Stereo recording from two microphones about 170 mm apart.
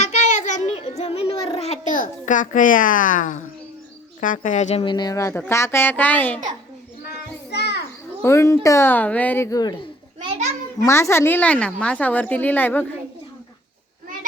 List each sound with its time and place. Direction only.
0.0 s children playing: 45° left (ahead or behind)
0.8 s a sound: 35° left (ahead or behind); by 3.3 s 50° left (ahead or behind)
4.2 s speech: 50° left (ahead or behind)
4.8 s a woman's voice: 25° left (ahead or behind); by 6.4 s 10° left (ahead or behind)
7.5 s children playing: 75° left (ahead or behind)
8.2 s a woman's voice: 15° left (ahead or behind)
10.2 s a sound: 40° right (ahead or behind)
10.8 s a woman's voice: 15° left (ahead or behind)